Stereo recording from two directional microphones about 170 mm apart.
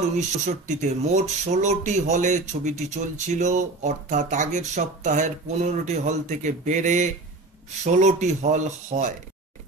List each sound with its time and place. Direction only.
0.5 s speech: 45° right (ahead or behind)